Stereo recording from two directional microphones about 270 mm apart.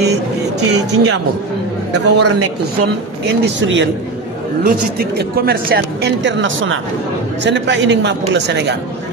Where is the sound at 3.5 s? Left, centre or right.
Right.